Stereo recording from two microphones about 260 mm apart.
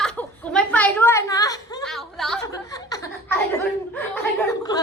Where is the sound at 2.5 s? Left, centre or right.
Centre.